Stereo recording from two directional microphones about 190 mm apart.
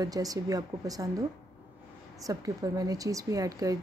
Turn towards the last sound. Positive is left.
turn(degrees=-20)  # may be behind; listen again after turning